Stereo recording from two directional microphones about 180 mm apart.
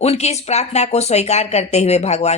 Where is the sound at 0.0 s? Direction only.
35° left (ahead or behind).